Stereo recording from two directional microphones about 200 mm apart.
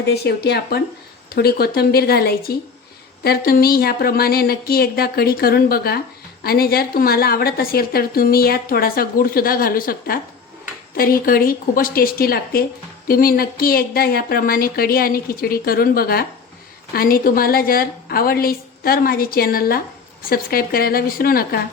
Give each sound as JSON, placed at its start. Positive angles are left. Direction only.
{"t": 0.2, "sound": "speech", "side_deg": 55}